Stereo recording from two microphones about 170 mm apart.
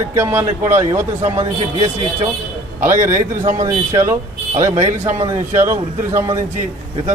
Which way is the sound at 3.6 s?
20° right (ahead or behind).